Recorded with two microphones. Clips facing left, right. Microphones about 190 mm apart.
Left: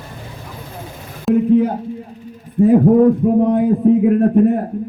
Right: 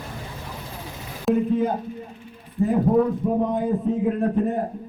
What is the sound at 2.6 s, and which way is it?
A man's voice, 65° left (ahead or behind).